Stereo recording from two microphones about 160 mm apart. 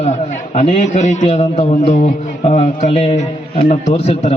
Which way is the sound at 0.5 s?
45° left (ahead or behind).